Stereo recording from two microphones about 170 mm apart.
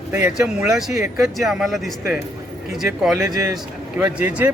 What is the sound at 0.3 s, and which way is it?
Speech, 5° right (ahead or behind).